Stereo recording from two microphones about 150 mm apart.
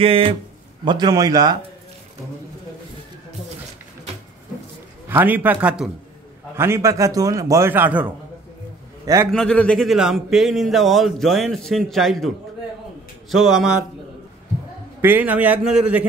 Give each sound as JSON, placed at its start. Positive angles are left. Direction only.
{"t": 0.0, "sound": "speech", "side_deg": -40}
{"t": 0.8, "sound": "a man's voice", "side_deg": -30}
{"t": 5.0, "sound": "a man's voice", "side_deg": -15}
{"t": 9.3, "sound": "speech", "side_deg": 5}
{"t": 13.3, "sound": "speech", "side_deg": 0}
{"t": 15.0, "sound": "a man's voice", "side_deg": -15}